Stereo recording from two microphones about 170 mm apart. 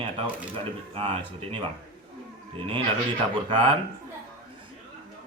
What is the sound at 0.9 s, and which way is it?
Speech, 30° right (ahead or behind).